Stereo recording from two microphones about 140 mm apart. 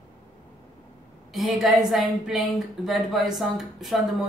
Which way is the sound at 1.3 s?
Centre (ahead or behind).